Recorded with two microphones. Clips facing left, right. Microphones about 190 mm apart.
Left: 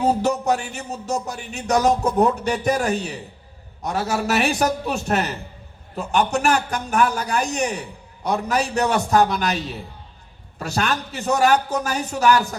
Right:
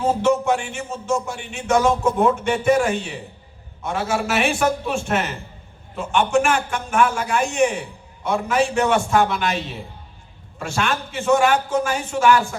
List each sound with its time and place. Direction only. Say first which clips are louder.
0.0 s a man's voice: right 1 dB; 40° left (ahead or behind)